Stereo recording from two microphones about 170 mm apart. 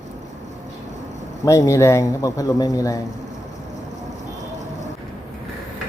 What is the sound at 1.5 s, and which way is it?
A man's voice, 20° left (ahead or behind).